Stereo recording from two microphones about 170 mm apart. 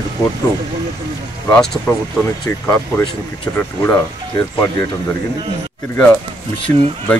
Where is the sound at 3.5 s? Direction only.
10° left (ahead or behind).